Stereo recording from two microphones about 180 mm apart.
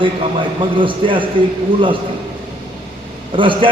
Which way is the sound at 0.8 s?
30° right (ahead or behind).